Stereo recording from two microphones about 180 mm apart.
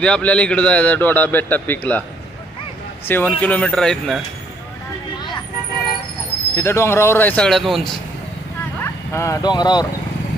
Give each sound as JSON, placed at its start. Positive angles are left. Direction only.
{"t": 0.0, "sound": "a man's voice", "side_deg": 5}
{"t": 3.1, "sound": "a man's voice", "side_deg": 10}
{"t": 6.5, "sound": "a man's voice", "side_deg": 15}
{"t": 9.1, "sound": "speech", "side_deg": 15}